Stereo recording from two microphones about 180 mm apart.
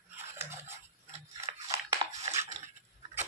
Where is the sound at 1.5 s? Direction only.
30° right (ahead or behind).